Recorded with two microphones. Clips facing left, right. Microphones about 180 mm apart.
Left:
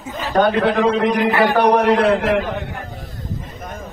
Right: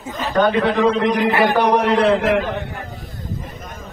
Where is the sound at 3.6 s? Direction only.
55° left (ahead or behind).